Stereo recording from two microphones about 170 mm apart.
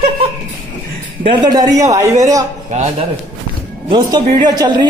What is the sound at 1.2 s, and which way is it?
A man's voice, 25° right (ahead or behind).